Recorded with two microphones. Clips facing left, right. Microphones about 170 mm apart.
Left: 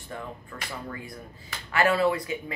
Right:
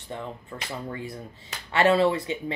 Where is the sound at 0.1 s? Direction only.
25° right (ahead or behind).